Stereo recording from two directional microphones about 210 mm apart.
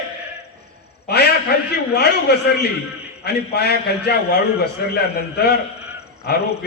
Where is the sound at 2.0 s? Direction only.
50° left (ahead or behind).